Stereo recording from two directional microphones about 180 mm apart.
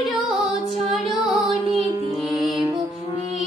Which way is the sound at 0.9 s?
Centre (ahead or behind).